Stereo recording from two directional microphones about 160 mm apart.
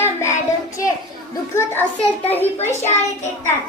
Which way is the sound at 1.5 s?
15° left (ahead or behind).